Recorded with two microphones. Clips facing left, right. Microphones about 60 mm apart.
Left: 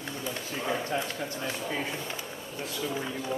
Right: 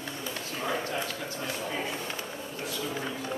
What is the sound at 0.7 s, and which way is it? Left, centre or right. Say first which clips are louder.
Speech: left 1 dB; centre.